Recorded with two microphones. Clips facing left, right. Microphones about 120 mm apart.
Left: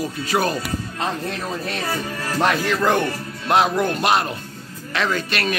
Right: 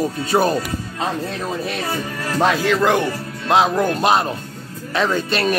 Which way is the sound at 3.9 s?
30° right (ahead or behind).